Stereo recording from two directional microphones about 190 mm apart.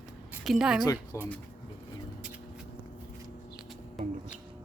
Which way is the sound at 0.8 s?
15° left (ahead or behind).